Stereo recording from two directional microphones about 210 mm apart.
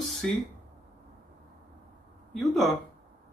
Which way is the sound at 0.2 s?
5° left (ahead or behind).